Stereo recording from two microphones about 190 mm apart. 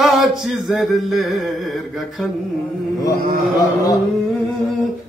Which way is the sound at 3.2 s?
50° right (ahead or behind).